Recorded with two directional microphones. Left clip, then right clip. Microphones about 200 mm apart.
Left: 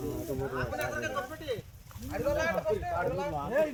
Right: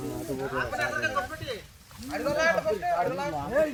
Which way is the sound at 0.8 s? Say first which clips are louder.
Right 7 dB; 55° left (ahead or behind).